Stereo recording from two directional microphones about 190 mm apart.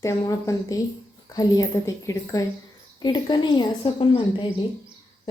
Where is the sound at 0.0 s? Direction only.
15° left (ahead or behind).